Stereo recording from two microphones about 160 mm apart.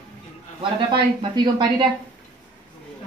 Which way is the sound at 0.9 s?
30° right (ahead or behind).